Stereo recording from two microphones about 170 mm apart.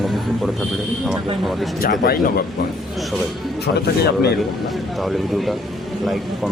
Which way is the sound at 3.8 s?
70° left (ahead or behind).